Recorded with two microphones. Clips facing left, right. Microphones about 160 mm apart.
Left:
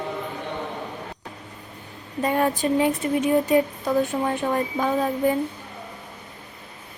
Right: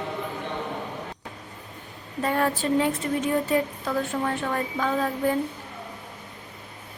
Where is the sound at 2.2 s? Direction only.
15° left (ahead or behind).